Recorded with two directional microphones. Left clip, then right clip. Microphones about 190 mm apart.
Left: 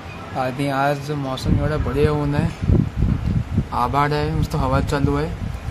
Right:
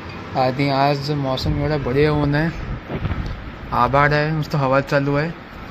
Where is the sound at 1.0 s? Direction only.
25° left (ahead or behind).